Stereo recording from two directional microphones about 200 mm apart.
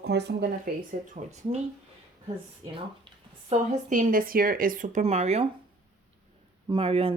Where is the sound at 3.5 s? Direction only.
40° right (ahead or behind).